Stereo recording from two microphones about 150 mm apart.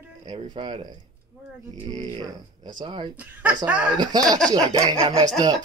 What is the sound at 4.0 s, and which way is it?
Speech, 25° right (ahead or behind).